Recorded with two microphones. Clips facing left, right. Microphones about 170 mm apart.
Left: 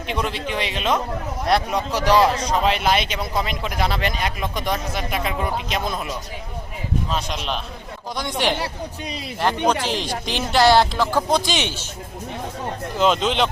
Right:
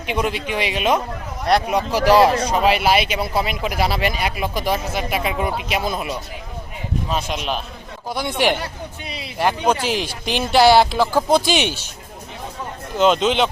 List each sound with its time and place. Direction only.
0.1 s a man's voice: 10° right (ahead or behind)
8.5 s speech: 35° left (ahead or behind)
9.4 s a man's voice: 10° right (ahead or behind)
13.0 s speech: centre (ahead or behind)